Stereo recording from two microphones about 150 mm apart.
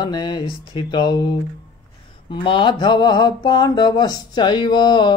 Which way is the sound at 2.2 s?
35° left (ahead or behind).